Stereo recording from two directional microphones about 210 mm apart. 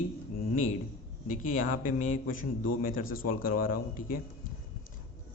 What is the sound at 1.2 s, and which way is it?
A man's voice, 40° left (ahead or behind).